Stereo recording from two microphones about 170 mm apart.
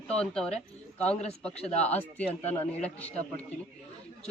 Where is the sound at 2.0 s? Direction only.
10° left (ahead or behind).